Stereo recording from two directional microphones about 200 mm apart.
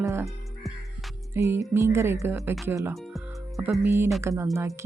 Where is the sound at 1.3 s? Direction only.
15° right (ahead or behind).